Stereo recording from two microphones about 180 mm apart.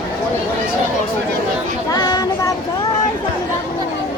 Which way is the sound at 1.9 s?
20° left (ahead or behind).